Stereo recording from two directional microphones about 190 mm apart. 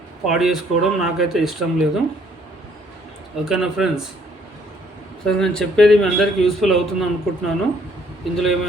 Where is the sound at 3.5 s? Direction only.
Centre (ahead or behind).